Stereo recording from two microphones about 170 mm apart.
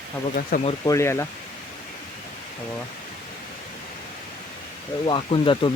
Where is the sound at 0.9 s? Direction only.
15° left (ahead or behind).